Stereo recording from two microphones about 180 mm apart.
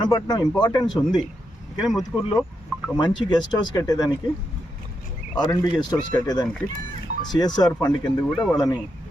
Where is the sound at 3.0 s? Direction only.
25° left (ahead or behind).